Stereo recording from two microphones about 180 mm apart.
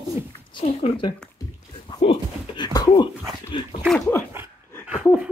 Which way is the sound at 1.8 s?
30° left (ahead or behind).